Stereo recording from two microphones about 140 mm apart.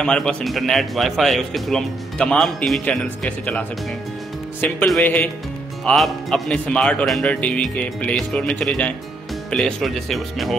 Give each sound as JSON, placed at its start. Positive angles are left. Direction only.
{"t": 0.0, "sound": "speech", "side_deg": 5}